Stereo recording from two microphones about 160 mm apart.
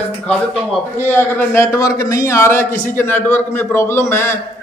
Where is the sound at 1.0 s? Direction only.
15° left (ahead or behind).